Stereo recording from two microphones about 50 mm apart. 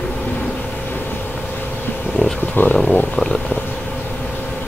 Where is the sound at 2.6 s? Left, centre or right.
Left.